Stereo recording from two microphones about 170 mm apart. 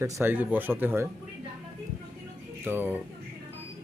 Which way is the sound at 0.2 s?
10° right (ahead or behind).